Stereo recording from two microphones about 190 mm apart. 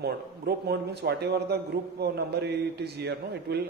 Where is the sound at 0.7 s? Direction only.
60° right (ahead or behind).